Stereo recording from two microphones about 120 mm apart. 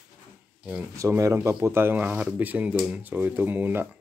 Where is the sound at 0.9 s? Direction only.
25° right (ahead or behind).